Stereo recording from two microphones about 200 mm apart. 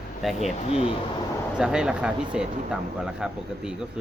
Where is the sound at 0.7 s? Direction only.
30° left (ahead or behind).